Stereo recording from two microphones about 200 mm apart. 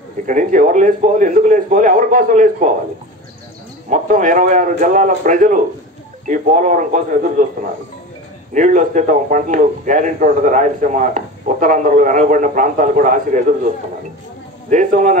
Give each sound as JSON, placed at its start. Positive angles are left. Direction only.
{"t": 0.3, "sound": "a man's voice", "side_deg": -40}
{"t": 3.9, "sound": "a man's voice", "side_deg": -40}
{"t": 8.5, "sound": "a man's voice", "side_deg": -40}
{"t": 14.7, "sound": "a man's voice", "side_deg": -40}